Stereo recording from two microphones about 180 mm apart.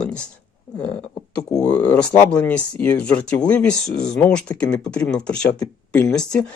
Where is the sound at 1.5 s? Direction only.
20° left (ahead or behind).